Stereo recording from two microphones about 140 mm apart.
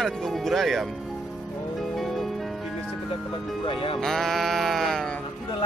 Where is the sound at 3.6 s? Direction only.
40° left (ahead or behind).